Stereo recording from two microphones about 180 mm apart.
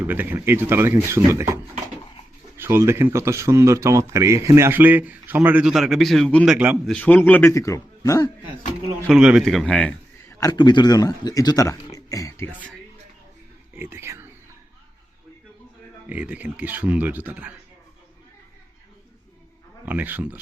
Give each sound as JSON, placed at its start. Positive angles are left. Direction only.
{"t": 0.0, "sound": "speech", "side_deg": -10}
{"t": 9.0, "sound": "a man's voice", "side_deg": -5}
{"t": 10.2, "sound": "speech", "side_deg": 20}
{"t": 13.7, "sound": "speech", "side_deg": -15}
{"t": 16.0, "sound": "speech", "side_deg": -10}
{"t": 19.8, "sound": "speech", "side_deg": -10}